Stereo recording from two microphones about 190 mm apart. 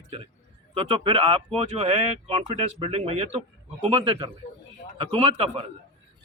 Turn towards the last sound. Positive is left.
turn(degrees=-30)  # may be behind; listen again after turning